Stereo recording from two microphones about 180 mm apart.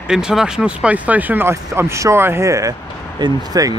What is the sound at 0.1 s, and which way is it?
Speech, 5° right (ahead or behind).